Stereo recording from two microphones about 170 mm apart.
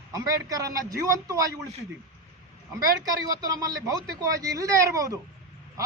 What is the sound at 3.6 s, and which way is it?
Speech, 20° right (ahead or behind).